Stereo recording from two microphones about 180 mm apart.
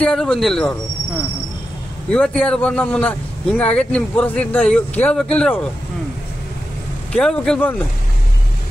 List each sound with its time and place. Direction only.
0.0 s speech: 5° left (ahead or behind)
2.0 s speech: 5° left (ahead or behind)
7.1 s speech: 5° left (ahead or behind)